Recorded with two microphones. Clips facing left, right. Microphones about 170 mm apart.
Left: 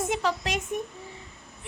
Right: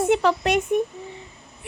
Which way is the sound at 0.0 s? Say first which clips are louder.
Right 8 dB; 60° right (ahead or behind).